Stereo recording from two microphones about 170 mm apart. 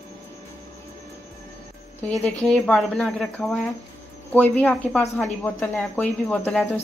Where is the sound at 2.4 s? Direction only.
5° left (ahead or behind).